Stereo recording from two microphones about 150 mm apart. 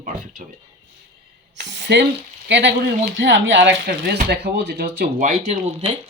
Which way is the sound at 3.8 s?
80° right.